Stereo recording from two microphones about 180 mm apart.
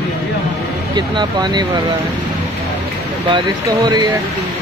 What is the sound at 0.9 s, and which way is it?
Speech, 25° right (ahead or behind).